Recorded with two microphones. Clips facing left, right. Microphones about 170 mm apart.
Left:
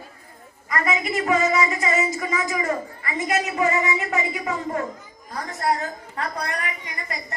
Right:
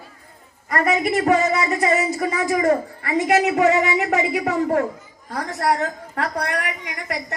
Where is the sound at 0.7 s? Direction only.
60° right (ahead or behind).